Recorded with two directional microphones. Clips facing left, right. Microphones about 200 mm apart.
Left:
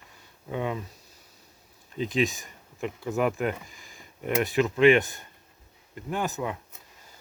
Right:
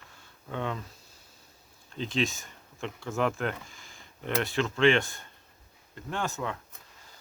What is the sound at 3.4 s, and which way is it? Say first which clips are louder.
Speech: left 4 dB; 5° left (ahead or behind).